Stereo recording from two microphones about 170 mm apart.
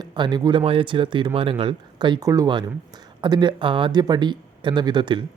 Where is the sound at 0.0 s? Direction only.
25° right (ahead or behind).